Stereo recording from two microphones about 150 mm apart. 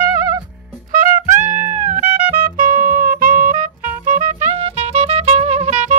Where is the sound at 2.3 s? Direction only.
65° right (ahead or behind).